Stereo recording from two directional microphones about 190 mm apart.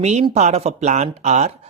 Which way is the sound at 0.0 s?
35° right (ahead or behind).